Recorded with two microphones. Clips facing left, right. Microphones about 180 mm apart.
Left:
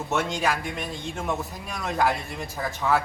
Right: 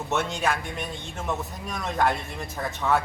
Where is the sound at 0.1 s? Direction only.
Centre (ahead or behind).